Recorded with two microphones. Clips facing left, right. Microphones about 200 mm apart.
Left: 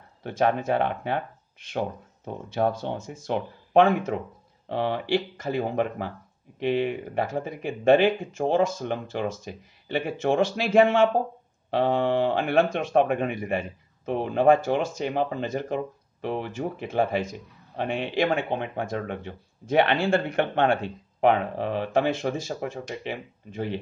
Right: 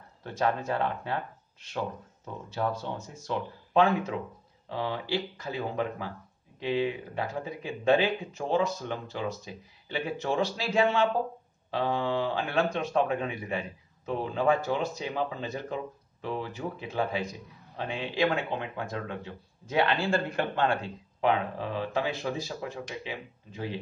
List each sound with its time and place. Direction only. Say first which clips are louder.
0.2 s speech: left 5 dB; 55° left (ahead or behind)
4.6 s speech: left 6 dB; 60° left (ahead or behind)
13.6 s speech: left 4 dB; 55° left (ahead or behind)
14.9 s speech: left 5 dB; 50° left (ahead or behind); by 22.2 s 65° left (ahead or behind)
22.2 s speech: left 5 dB; 50° left (ahead or behind)